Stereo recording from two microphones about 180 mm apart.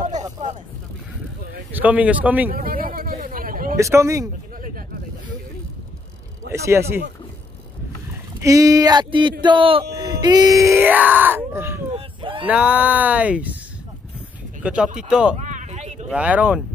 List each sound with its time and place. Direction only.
1.7 s speech: 10° right (ahead or behind)
2.5 s chatter: 55° right (ahead or behind)
3.7 s speech: 15° right (ahead or behind)
6.5 s speech: 15° right (ahead or behind)
8.4 s speech: 20° right (ahead or behind)
11.9 s a sound: 30° right (ahead or behind)
12.4 s speech: 5° right (ahead or behind)
14.6 s speech: 5° right (ahead or behind)
15.4 s a sound: 40° right (ahead or behind)
16.1 s speech: 5° right (ahead or behind)